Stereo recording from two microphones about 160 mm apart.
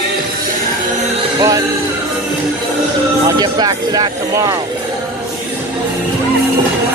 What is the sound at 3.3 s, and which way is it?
Speech, 25° right (ahead or behind).